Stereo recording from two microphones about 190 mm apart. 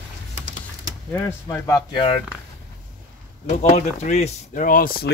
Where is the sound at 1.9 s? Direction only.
25° left (ahead or behind).